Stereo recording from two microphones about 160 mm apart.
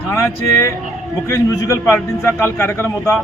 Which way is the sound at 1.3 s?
20° left (ahead or behind).